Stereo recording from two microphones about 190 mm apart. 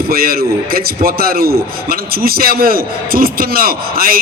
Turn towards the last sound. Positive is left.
turn(degrees=-50)  # may be behind; listen again after turning